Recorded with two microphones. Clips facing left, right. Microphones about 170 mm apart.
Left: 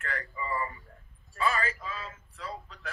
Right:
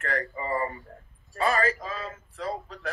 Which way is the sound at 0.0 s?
40° right (ahead or behind).